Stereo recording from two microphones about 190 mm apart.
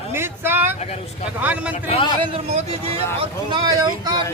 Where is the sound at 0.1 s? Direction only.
10° right (ahead or behind).